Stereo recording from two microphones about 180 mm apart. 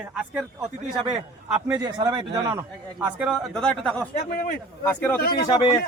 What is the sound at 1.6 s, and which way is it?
Speech, 15° right (ahead or behind).